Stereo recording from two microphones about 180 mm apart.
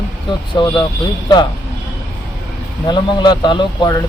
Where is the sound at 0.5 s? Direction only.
25° left (ahead or behind).